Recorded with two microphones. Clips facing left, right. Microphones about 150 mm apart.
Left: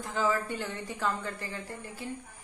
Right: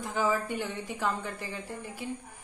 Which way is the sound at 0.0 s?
15° right (ahead or behind).